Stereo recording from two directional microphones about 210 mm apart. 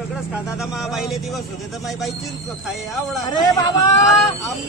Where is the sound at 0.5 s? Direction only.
Centre (ahead or behind).